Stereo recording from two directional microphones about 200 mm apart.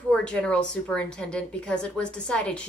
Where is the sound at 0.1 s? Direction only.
5° left (ahead or behind).